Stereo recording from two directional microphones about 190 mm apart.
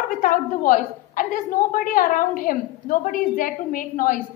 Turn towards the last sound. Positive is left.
turn(degrees=45)  # may be behind; listen again after turning